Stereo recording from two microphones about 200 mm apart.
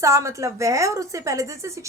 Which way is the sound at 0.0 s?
15° right (ahead or behind).